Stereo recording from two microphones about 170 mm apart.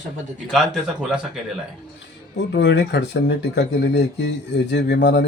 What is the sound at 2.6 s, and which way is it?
Speech, 90° left.